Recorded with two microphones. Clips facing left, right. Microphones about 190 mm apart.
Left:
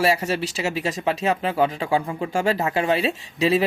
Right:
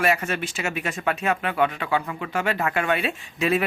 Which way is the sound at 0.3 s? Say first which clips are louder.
Left 3 dB; 35° left (ahead or behind).